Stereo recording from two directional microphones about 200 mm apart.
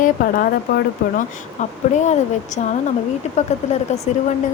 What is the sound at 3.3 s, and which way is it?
Speech, 35° left (ahead or behind).